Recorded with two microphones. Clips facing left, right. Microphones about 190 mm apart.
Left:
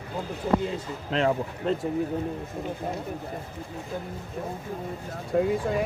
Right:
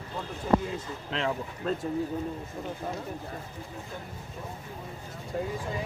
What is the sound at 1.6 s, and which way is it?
Speech, 25° left (ahead or behind).